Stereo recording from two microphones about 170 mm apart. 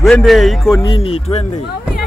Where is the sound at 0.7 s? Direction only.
25° left (ahead or behind).